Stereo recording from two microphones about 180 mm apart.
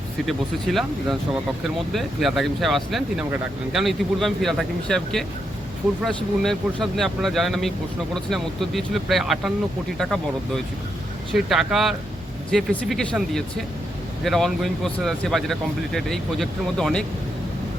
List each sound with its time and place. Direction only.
0.3 s speech: centre (ahead or behind)
1.9 s speech: centre (ahead or behind)